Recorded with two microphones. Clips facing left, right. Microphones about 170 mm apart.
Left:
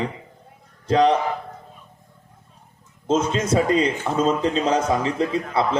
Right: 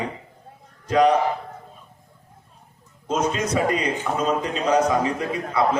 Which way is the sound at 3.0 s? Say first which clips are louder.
Left 2 dB; 25° left (ahead or behind).